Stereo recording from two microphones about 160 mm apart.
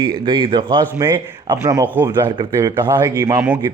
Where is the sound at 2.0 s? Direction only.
25° right (ahead or behind); by 3.6 s 10° right (ahead or behind).